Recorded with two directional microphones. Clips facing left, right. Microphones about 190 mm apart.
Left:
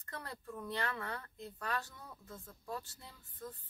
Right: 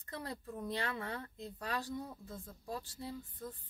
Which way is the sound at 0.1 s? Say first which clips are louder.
Right 3 dB; 15° right (ahead or behind).